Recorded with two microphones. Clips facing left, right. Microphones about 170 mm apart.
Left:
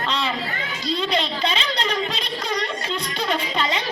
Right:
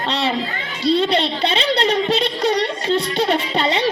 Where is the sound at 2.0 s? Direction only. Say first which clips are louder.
Right 10 dB; 70° right (ahead or behind).